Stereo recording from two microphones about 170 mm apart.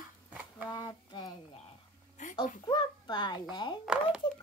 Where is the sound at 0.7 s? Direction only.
25° left (ahead or behind).